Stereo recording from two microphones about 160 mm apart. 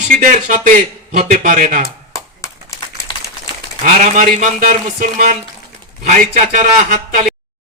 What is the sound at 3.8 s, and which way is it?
A man's voice, 50° right (ahead or behind).